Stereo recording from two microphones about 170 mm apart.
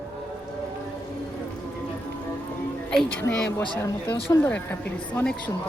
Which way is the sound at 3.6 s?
30° left (ahead or behind).